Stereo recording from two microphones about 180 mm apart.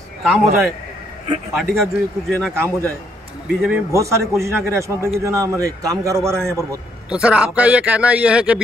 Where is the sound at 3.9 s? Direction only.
15° right (ahead or behind).